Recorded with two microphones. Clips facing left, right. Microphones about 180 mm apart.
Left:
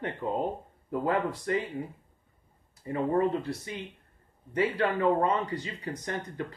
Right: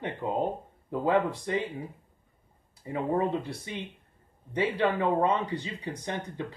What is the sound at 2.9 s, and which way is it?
Speech, 25° right (ahead or behind).